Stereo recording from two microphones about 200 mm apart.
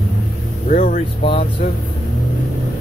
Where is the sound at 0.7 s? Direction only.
40° left (ahead or behind).